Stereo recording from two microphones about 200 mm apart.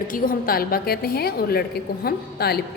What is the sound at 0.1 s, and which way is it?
A woman's voice, 45° left (ahead or behind).